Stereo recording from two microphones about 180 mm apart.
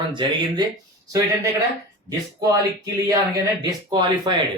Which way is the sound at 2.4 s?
20° right (ahead or behind).